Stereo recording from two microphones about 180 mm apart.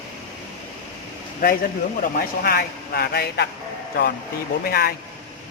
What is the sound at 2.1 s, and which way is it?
Speech, 55° left (ahead or behind).